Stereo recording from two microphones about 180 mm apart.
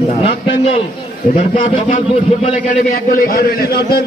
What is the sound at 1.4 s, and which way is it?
A man's voice, 45° left (ahead or behind).